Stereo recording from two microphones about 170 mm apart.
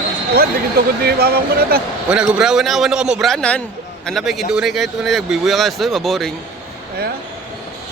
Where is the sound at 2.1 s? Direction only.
5° right (ahead or behind).